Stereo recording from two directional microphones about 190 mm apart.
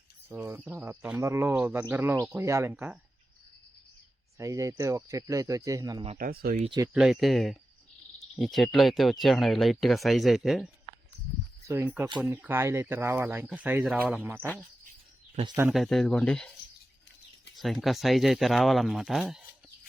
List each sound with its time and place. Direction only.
0.3 s speech: 15° right (ahead or behind)
4.4 s speech: 15° right (ahead or behind)
6.1 s speech: 50° right (ahead or behind)
6.7 s speech: 20° right (ahead or behind)
6.9 s speech: centre (ahead or behind)
11.6 s speech: 15° right (ahead or behind)
15.7 s speech: centre (ahead or behind)
17.5 s speech: centre (ahead or behind)